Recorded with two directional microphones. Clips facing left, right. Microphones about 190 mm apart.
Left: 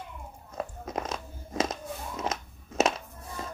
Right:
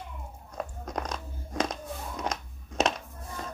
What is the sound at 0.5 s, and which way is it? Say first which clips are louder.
Biting: left 1 dB; 5° left (ahead or behind).